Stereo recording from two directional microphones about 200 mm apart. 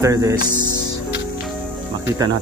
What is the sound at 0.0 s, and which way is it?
Music, 15° right (ahead or behind).